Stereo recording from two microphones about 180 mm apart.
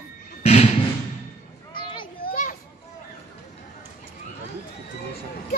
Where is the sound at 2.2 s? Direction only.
50° left (ahead or behind).